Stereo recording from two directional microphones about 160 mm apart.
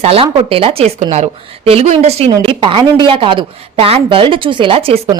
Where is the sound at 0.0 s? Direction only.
35° right (ahead or behind).